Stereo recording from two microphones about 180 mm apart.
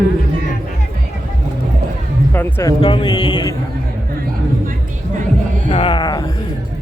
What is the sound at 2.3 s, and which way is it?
Music, 15° left (ahead or behind).